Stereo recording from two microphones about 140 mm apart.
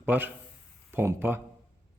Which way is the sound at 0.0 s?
10° right (ahead or behind).